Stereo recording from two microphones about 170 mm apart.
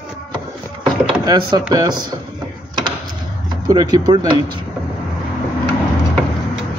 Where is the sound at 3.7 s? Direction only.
25° right (ahead or behind).